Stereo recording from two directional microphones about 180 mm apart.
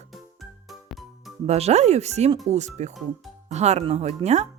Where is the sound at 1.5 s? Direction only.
35° right (ahead or behind).